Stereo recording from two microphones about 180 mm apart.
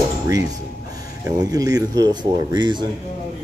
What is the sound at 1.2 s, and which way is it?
Speech, 20° right (ahead or behind).